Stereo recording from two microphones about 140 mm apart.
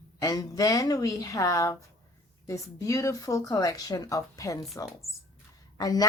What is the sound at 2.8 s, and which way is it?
Speech, 20° left (ahead or behind).